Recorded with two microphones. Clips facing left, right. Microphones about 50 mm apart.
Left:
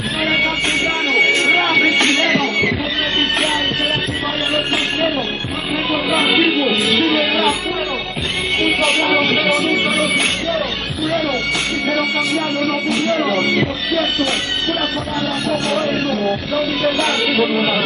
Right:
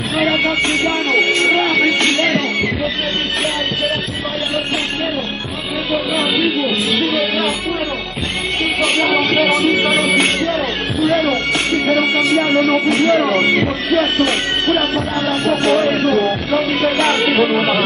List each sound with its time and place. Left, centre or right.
0.8 s music: left
5.9 s music: left
9.3 s music: right